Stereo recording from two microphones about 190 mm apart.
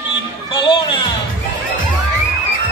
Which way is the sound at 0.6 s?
25° left (ahead or behind).